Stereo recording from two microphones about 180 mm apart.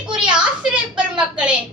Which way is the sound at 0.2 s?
5° right (ahead or behind).